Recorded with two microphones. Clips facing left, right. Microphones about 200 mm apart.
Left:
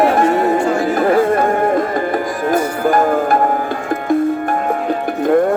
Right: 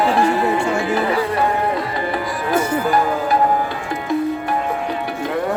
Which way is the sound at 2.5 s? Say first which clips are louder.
Left 2 dB; 50° left (ahead or behind).